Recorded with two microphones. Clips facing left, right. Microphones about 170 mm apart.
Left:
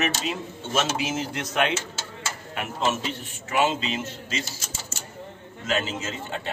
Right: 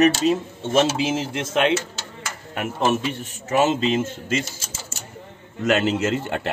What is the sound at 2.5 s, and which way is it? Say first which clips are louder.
Speech: right 5 dB; 45° right (ahead or behind).